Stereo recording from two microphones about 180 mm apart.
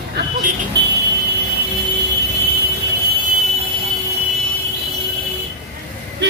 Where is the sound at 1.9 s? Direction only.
70° right (ahead or behind).